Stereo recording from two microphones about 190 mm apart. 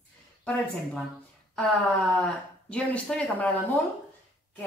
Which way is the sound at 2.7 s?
5° left (ahead or behind).